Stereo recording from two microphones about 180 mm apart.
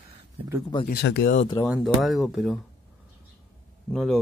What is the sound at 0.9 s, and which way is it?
Speech, 65° left (ahead or behind).